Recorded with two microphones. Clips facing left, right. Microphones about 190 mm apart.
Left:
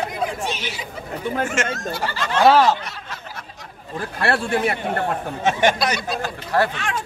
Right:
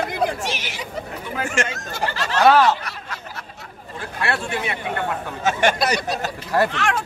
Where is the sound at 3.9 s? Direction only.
45° left (ahead or behind).